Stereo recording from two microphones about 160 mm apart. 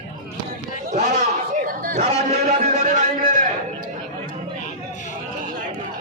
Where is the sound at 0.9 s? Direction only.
50° right (ahead or behind).